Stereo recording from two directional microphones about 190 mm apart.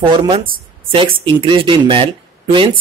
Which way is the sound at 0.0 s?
25° right (ahead or behind).